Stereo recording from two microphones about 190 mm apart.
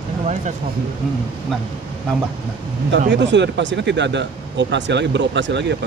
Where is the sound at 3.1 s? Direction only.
65° right (ahead or behind).